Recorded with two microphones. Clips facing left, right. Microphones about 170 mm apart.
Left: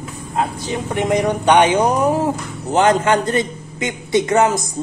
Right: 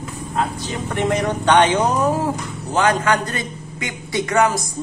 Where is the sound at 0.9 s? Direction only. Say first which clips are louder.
Left 3 dB; 15° left (ahead or behind).